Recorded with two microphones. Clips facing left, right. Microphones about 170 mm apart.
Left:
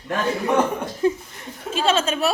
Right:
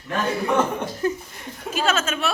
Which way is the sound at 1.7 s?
30° left (ahead or behind).